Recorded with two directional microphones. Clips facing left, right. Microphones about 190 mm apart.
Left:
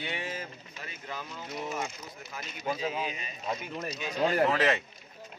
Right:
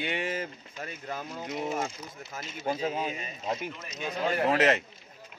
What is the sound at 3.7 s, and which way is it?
Speech, 40° left (ahead or behind).